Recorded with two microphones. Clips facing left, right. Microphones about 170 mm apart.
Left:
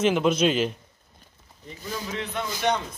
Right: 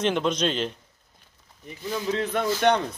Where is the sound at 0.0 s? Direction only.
5° left (ahead or behind).